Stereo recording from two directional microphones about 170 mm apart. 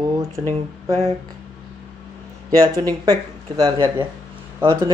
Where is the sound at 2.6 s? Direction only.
20° right (ahead or behind).